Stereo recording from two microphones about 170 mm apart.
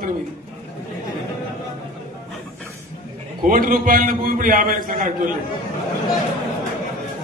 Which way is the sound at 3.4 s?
55° right (ahead or behind).